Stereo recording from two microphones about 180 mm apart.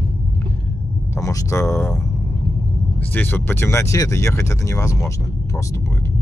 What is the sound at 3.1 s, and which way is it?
Speech, 10° left (ahead or behind).